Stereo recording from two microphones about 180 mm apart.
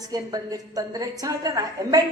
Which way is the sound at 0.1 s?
20° right (ahead or behind).